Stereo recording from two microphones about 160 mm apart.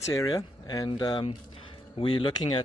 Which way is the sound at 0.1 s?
20° left (ahead or behind).